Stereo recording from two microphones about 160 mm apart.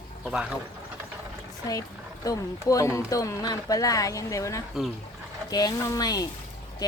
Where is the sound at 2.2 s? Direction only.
20° left (ahead or behind).